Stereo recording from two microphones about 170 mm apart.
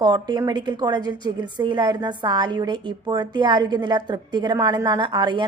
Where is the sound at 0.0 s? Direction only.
25° right (ahead or behind).